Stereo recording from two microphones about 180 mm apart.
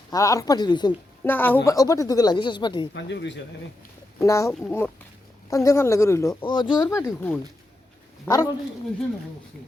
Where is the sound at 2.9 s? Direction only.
75° left (ahead or behind).